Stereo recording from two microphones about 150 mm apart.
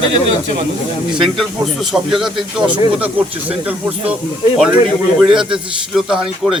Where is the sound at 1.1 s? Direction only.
Centre (ahead or behind).